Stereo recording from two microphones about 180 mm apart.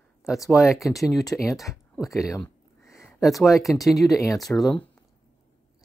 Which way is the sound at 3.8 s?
Centre (ahead or behind).